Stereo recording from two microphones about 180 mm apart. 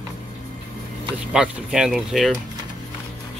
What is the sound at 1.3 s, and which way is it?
Speech, 5° right (ahead or behind).